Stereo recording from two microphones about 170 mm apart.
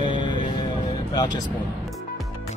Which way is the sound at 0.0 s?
25° left (ahead or behind).